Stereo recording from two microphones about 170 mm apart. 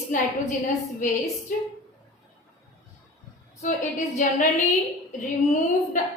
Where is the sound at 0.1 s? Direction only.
50° left (ahead or behind).